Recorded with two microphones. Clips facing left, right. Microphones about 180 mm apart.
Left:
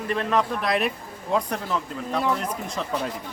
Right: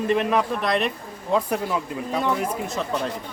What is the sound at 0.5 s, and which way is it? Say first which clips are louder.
Speech: right 1 dB; centre (ahead or behind).